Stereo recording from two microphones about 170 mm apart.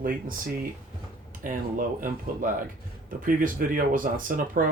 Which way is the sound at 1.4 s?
50° right (ahead or behind).